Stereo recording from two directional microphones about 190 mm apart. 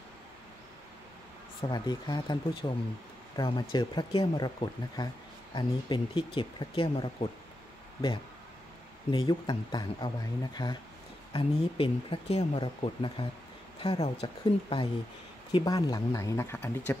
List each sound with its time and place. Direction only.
1.6 s speech: 20° left (ahead or behind)
9.1 s speech: 20° left (ahead or behind)